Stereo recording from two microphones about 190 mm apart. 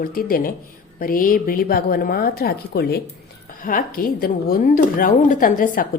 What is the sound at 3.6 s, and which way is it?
A woman's voice, 45° left (ahead or behind).